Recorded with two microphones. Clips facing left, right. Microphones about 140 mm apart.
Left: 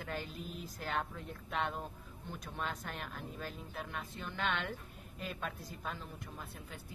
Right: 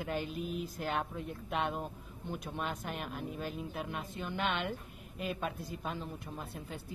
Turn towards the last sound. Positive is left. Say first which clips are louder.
# right 5 dB
turn(degrees=-20)  # may be behind; listen again after turning